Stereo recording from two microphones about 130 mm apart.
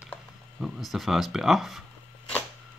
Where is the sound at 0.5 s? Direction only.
5° right (ahead or behind).